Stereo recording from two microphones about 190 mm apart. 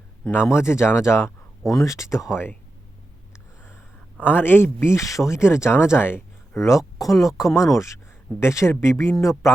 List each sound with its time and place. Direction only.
0.3 s speech: 15° left (ahead or behind)
3.6 s a sound: 10° left (ahead or behind)
4.4 s speech: 10° left (ahead or behind)
7.1 s speech: centre (ahead or behind)
7.3 s speech: 15° left (ahead or behind)